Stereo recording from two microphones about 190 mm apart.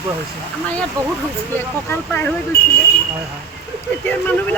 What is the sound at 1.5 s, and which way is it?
Speech, 10° left (ahead or behind).